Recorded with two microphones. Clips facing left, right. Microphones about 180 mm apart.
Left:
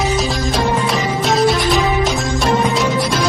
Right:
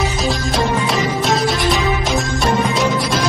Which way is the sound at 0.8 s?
Centre (ahead or behind).